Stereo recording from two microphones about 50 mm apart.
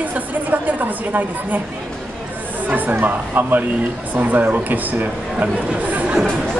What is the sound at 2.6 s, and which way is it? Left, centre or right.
A woman's voice, right.